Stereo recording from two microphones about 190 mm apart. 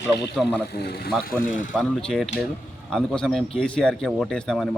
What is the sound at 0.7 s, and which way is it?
Speech, 55° left (ahead or behind).